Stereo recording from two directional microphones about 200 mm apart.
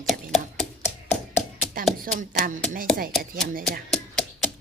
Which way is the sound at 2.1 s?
45° right (ahead or behind).